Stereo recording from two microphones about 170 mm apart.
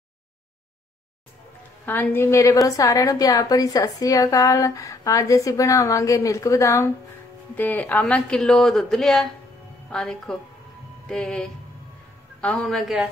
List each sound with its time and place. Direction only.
1.9 s a woman's voice: 15° left (ahead or behind); by 13.1 s 5° right (ahead or behind)